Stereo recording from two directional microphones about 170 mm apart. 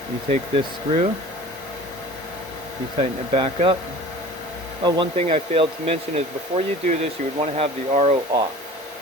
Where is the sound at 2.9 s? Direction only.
30° right (ahead or behind).